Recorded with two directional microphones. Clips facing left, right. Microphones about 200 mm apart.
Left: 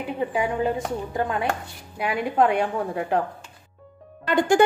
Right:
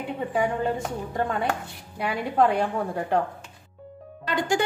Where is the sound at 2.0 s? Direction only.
5° left (ahead or behind).